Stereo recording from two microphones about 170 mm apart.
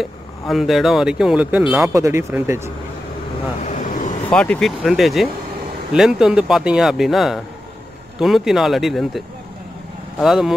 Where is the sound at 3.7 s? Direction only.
45° left (ahead or behind).